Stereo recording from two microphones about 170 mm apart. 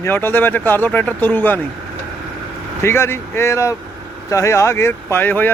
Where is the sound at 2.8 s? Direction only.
15° left (ahead or behind).